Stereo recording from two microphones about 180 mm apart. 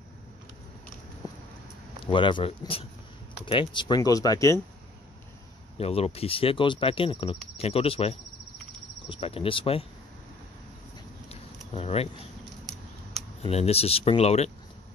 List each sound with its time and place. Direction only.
1.2 s a sound: 20° left (ahead or behind)
2.0 s speech: 25° left (ahead or behind)
5.8 s speech: 35° left (ahead or behind)
11.7 s speech: 35° left (ahead or behind)
13.4 s speech: 35° left (ahead or behind)